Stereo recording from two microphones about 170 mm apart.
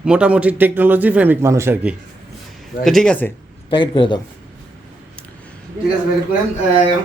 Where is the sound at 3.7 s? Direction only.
30° left (ahead or behind).